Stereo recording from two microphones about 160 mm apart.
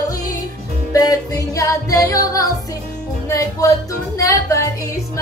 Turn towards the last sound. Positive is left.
turn(degrees=20)  # may be behind; listen again after turning